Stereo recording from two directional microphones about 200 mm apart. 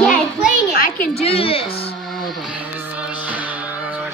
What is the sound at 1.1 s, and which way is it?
Speech, 30° left (ahead or behind).